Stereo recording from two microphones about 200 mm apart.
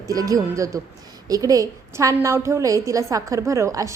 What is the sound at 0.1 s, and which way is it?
A woman's voice, 15° right (ahead or behind).